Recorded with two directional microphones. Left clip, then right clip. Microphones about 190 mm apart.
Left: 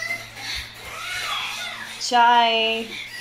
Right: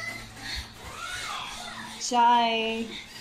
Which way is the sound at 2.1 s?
Centre (ahead or behind).